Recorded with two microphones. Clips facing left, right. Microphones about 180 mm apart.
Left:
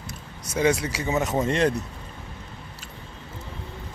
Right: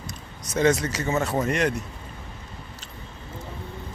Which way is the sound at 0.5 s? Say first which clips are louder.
Right 1 dB; 10° left (ahead or behind).